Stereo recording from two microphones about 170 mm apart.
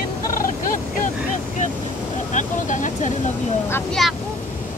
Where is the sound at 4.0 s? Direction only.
Centre (ahead or behind).